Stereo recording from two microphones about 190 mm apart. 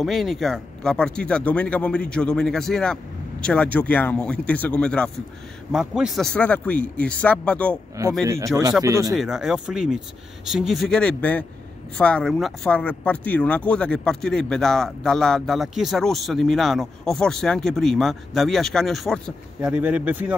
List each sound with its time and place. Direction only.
0.0 s speech: centre (ahead or behind)
8.8 s speech: 15° right (ahead or behind)
9.1 s speech: centre (ahead or behind)